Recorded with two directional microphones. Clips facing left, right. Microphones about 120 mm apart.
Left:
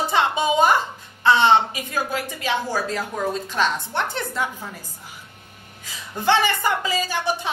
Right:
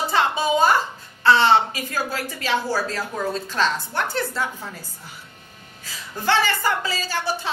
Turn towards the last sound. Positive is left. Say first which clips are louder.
# left 2 dB
turn(degrees=20)  # may be behind; listen again after turning